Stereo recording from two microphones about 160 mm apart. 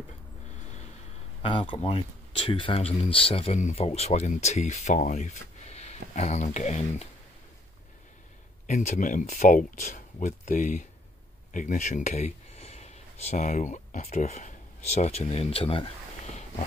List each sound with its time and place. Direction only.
1.4 s speech: 35° left (ahead or behind)
8.6 s speech: 50° left (ahead or behind)